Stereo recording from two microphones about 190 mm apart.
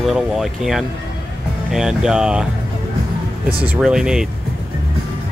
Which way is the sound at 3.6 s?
5° right (ahead or behind).